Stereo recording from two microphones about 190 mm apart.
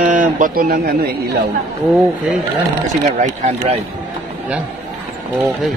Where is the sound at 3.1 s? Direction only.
40° right (ahead or behind).